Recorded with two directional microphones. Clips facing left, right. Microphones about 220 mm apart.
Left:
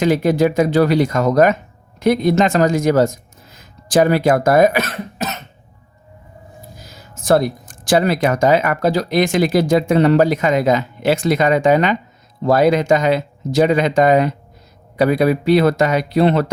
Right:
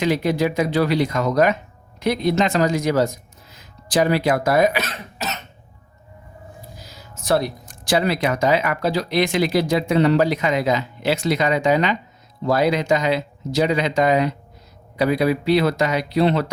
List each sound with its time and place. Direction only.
0.0 s speech: 45° left (ahead or behind)
6.7 s speech: 50° left (ahead or behind)